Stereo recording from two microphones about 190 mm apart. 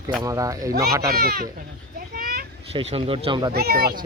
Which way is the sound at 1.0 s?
50° right (ahead or behind).